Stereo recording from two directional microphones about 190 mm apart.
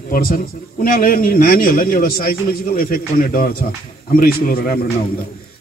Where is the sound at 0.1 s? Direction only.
50° left (ahead or behind).